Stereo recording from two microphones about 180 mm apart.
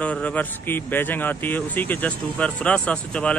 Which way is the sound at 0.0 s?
5° left (ahead or behind).